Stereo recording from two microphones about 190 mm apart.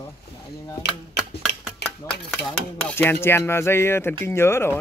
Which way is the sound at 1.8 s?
60° left (ahead or behind).